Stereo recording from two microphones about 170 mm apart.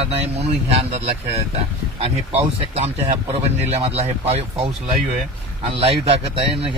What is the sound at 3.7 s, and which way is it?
Speech, 40° right (ahead or behind).